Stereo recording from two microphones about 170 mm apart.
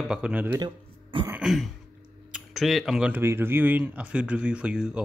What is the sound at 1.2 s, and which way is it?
Throat clearing, 5° right (ahead or behind).